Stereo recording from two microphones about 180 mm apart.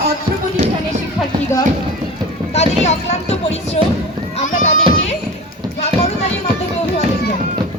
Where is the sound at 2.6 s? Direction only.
35° left (ahead or behind).